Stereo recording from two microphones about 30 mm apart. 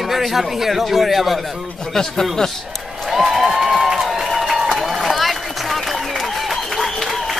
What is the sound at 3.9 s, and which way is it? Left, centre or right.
Crowd, centre.